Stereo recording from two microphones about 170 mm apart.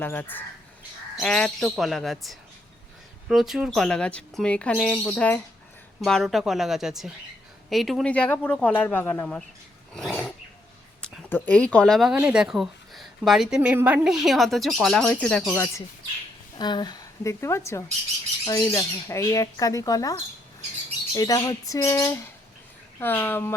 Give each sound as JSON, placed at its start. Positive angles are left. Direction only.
{"t": 0.0, "sound": "a woman's voice", "side_deg": 10}
{"t": 9.9, "sound": "a sound", "side_deg": 0}
{"t": 11.0, "sound": "a woman's voice", "side_deg": 10}
{"t": 16.6, "sound": "speech", "side_deg": 25}
{"t": 21.2, "sound": "speech", "side_deg": 20}